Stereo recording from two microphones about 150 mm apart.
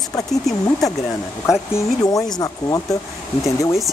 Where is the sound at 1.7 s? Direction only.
25° left (ahead or behind).